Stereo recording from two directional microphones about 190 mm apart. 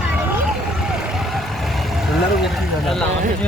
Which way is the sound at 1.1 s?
Centre (ahead or behind).